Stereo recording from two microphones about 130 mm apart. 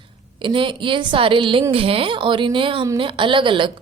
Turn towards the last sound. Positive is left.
turn(degrees=-40)  # may be behind; listen again after turning